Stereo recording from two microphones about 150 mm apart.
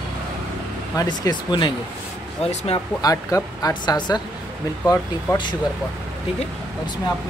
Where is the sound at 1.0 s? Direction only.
25° left (ahead or behind).